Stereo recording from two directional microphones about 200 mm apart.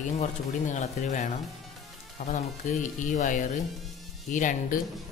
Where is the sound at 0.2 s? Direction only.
35° left (ahead or behind).